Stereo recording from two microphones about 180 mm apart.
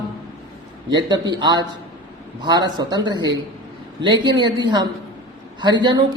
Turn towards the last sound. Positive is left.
turn(degrees=-25)  # may be behind; listen again after turning